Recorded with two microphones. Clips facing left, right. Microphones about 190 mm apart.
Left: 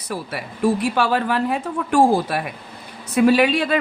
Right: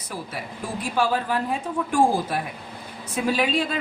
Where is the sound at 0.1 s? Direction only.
70° left (ahead or behind).